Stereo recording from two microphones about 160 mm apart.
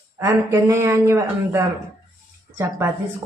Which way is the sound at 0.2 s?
20° right (ahead or behind).